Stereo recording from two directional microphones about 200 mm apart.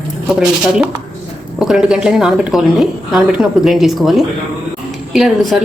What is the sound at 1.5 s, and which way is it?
A woman's voice, centre (ahead or behind).